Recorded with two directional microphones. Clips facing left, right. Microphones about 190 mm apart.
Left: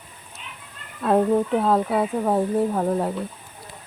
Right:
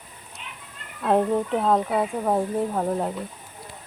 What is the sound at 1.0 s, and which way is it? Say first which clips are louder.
Speech: left 2 dB; centre (ahead or behind).